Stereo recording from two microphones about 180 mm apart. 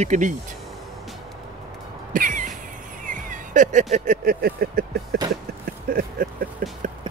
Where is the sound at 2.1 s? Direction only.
45° right (ahead or behind).